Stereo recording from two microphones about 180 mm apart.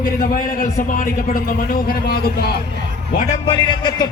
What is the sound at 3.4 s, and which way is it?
Speech, 25° left (ahead or behind).